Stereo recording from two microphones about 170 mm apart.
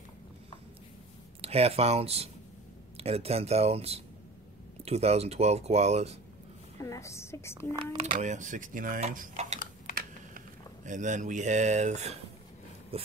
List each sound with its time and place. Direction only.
1.4 s speech: 35° right (ahead or behind)
6.8 s a woman's voice: 15° left (ahead or behind)
8.0 s speech: 45° right (ahead or behind)
10.9 s speech: 45° right (ahead or behind)
12.9 s a sound: 35° right (ahead or behind)